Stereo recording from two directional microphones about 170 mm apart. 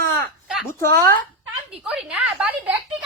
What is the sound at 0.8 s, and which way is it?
Speech, 15° left (ahead or behind).